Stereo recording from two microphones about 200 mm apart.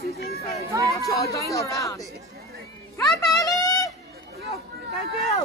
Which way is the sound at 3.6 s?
20° left (ahead or behind).